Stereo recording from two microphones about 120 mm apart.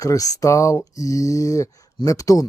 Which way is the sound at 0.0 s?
30° left (ahead or behind).